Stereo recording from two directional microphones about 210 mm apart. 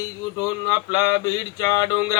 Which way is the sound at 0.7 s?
20° left (ahead or behind).